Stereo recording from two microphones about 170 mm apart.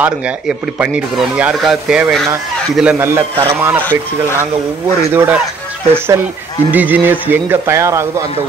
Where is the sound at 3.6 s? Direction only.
10° right (ahead or behind).